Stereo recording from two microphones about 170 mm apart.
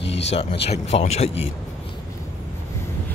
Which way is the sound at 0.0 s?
90° left.